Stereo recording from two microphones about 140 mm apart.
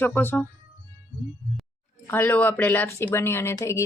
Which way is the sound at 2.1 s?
15° left (ahead or behind).